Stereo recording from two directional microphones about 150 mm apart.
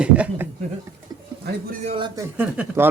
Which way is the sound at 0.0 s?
10° right (ahead or behind).